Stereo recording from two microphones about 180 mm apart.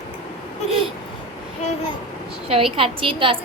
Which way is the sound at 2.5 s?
30° right (ahead or behind).